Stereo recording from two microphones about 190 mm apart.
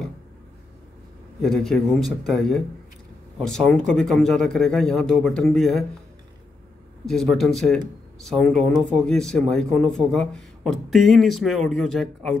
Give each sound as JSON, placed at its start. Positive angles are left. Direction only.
{"t": 1.4, "sound": "speech", "side_deg": 0}
{"t": 7.1, "sound": "speech", "side_deg": 0}